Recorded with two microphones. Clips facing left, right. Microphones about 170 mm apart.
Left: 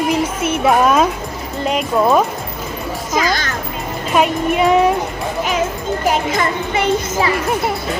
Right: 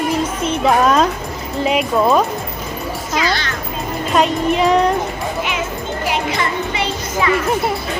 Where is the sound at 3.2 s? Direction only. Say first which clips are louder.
Left 2 dB; 45° left (ahead or behind).